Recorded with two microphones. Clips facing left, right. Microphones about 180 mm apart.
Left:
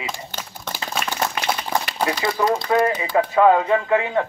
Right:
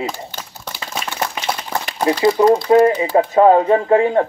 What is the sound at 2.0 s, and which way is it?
Speech, 30° right (ahead or behind).